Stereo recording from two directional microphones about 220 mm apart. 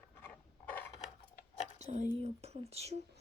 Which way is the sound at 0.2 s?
10° left (ahead or behind).